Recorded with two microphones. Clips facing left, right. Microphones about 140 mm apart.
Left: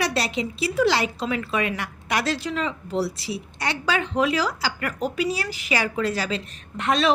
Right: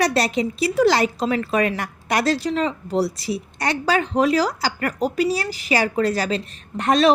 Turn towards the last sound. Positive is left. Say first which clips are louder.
# right 5 dB
turn(degrees=-40)  # may be behind; listen again after turning